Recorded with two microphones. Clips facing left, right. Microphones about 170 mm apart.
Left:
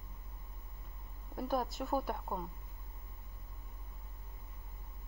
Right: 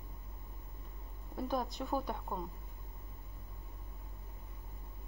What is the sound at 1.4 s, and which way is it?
Speech, 10° left (ahead or behind).